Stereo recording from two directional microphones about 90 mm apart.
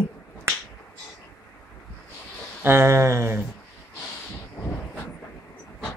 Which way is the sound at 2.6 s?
30° right (ahead or behind).